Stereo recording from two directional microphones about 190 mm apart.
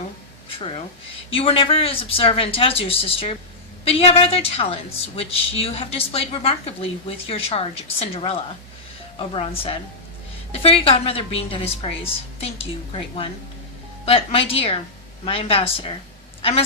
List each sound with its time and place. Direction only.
1.3 s a woman's voice: 30° left (ahead or behind)